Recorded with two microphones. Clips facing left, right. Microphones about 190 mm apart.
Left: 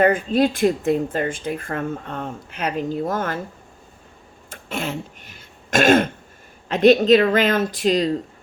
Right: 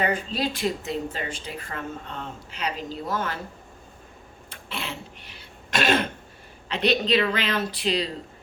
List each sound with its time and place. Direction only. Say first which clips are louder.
0.0 s a woman's voice: left 9 dB; 50° left (ahead or behind)
4.4 s a woman's voice: left 8 dB; 45° left (ahead or behind)